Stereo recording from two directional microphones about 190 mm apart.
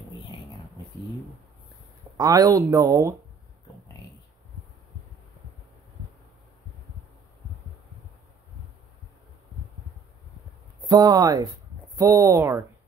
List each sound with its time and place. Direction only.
2.1 s speech: 20° right (ahead or behind)
10.9 s speech: 20° right (ahead or behind)